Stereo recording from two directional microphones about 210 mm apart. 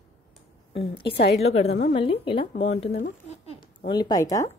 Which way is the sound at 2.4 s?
35° left (ahead or behind).